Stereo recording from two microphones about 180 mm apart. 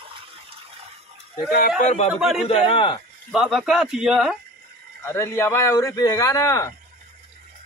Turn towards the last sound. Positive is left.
turn(degrees=15)  # may be behind; listen again after turning